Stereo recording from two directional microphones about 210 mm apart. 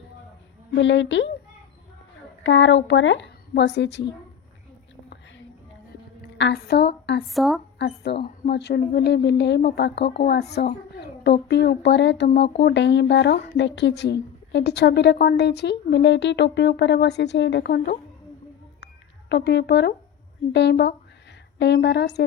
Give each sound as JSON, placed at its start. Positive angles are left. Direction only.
{"t": 0.8, "sound": "a woman's voice", "side_deg": 60}
{"t": 2.4, "sound": "a woman's voice", "side_deg": 60}
{"t": 6.3, "sound": "a woman's voice", "side_deg": 55}
{"t": 7.3, "sound": "speech", "side_deg": 0}
{"t": 7.8, "sound": "a woman's voice", "side_deg": 55}
{"t": 19.3, "sound": "a woman's voice", "side_deg": 50}